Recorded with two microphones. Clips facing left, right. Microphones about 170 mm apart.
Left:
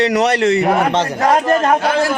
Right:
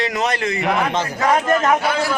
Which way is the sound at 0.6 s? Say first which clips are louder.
Left 5 dB; 40° left (ahead or behind).